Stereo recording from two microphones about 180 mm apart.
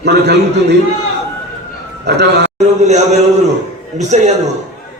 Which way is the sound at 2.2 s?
70° right (ahead or behind).